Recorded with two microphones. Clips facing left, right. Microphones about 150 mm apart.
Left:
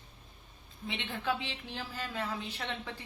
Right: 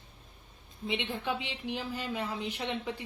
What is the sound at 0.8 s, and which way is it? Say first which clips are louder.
A woman's voice: right 2 dB; 15° right (ahead or behind).